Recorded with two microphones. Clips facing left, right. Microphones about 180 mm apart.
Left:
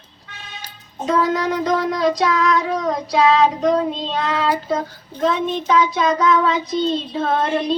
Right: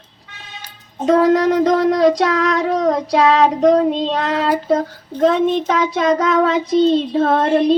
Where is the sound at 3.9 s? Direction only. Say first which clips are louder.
Right 4 dB; 70° right (ahead or behind).